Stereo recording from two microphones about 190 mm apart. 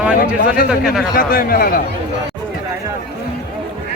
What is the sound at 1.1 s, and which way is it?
Speech, 50° left (ahead or behind).